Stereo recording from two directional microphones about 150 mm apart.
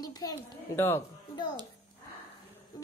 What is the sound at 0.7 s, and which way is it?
Speech, 15° left (ahead or behind).